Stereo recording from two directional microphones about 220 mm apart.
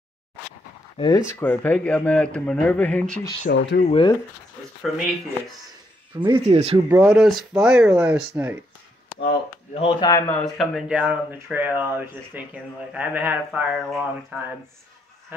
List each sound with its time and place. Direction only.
0.9 s speech: 20° left (ahead or behind)
3.4 s speech: 55° left (ahead or behind)
3.8 s speech: 25° left (ahead or behind)
6.1 s speech: 20° right (ahead or behind)
6.9 s speech: 5° right (ahead or behind)
9.8 s speech: 20° left (ahead or behind); by 14.4 s centre (ahead or behind)